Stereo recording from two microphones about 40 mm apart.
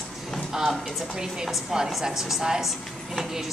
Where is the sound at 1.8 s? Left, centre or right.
Centre.